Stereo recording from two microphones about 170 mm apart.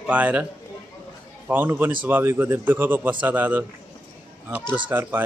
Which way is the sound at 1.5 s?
10° right (ahead or behind).